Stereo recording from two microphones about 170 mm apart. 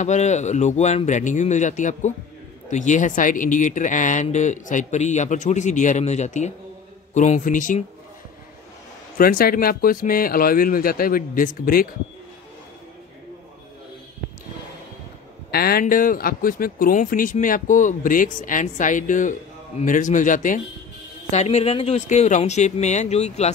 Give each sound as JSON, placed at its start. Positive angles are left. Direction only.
{"t": 0.0, "sound": "speech", "side_deg": 45}
{"t": 9.2, "sound": "speech", "side_deg": 60}
{"t": 15.5, "sound": "speech", "side_deg": 65}
{"t": 21.3, "sound": "speech", "side_deg": 40}